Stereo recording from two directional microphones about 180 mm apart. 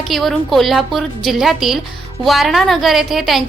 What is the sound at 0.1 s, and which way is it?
A woman's voice, centre (ahead or behind).